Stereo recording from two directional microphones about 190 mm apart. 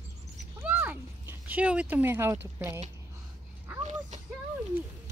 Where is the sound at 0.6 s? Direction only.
10° right (ahead or behind).